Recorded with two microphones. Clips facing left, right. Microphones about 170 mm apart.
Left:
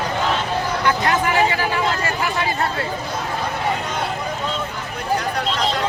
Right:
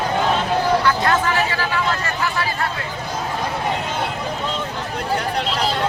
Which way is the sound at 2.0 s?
15° left (ahead or behind).